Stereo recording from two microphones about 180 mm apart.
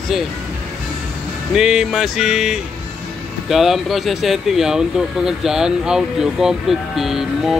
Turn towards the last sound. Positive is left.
turn(degrees=0)  # may be behind; listen again after turning